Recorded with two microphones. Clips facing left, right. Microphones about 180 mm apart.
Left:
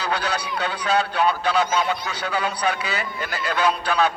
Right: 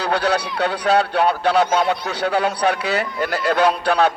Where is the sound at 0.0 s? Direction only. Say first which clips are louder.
Right 6 dB; 65° right (ahead or behind).